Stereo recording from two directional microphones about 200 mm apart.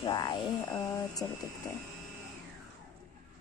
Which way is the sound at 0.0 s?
25° left (ahead or behind).